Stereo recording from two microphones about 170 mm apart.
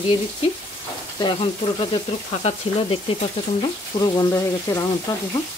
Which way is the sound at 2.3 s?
35° left (ahead or behind).